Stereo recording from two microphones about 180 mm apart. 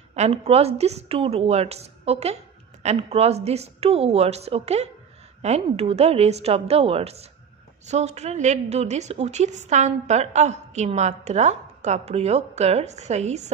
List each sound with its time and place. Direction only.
0.1 s a woman's voice: 35° right (ahead or behind)